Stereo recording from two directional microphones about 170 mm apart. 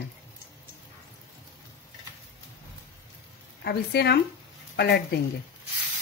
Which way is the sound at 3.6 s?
75° left (ahead or behind).